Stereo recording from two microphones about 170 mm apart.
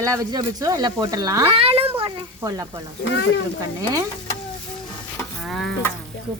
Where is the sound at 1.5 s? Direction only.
35° right (ahead or behind).